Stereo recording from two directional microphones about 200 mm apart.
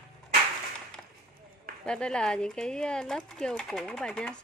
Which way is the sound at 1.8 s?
5° left (ahead or behind).